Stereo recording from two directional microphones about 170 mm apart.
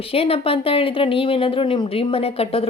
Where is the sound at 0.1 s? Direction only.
35° left (ahead or behind).